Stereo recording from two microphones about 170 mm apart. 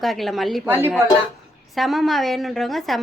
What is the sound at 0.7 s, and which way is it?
Speech, 15° right (ahead or behind).